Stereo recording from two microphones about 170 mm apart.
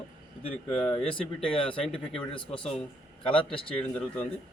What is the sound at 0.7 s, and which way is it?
A man's voice, 5° left (ahead or behind).